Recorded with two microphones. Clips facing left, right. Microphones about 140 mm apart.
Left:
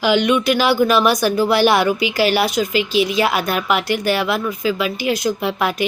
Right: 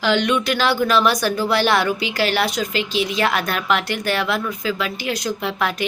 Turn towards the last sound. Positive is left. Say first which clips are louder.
# left 3 dB
turn(degrees=10)  # may be behind; listen again after turning